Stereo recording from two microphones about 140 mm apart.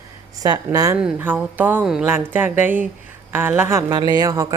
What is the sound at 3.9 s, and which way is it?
Speech, 30° right (ahead or behind).